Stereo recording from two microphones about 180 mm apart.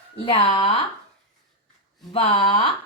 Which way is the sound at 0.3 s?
30° left (ahead or behind).